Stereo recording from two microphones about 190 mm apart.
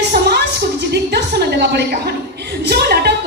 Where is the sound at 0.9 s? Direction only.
60° right (ahead or behind).